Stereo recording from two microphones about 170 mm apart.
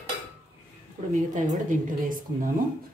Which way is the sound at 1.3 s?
45° right (ahead or behind).